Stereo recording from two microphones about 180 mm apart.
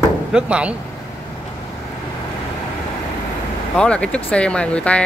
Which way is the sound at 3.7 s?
5° left (ahead or behind).